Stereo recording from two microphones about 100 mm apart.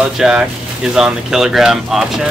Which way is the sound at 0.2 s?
5° right (ahead or behind).